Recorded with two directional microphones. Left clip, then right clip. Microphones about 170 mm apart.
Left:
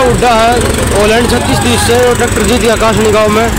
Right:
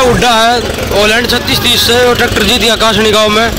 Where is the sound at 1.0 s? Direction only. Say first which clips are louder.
Even; centre (ahead or behind).